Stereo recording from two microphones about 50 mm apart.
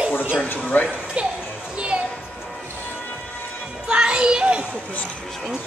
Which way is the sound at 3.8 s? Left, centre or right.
Centre.